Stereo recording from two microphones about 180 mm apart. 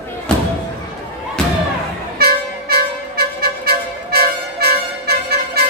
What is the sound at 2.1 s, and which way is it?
Music, 60° right (ahead or behind).